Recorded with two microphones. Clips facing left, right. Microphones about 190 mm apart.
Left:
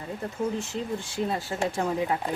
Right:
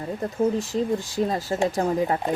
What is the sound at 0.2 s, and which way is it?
Speech, 40° right (ahead or behind).